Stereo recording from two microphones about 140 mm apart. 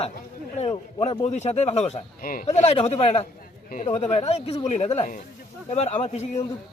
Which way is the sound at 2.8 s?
45° left (ahead or behind).